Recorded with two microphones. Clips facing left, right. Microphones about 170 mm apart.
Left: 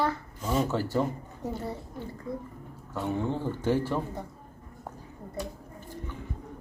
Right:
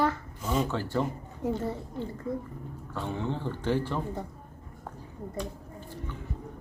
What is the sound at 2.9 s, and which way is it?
A man's voice, 10° left (ahead or behind).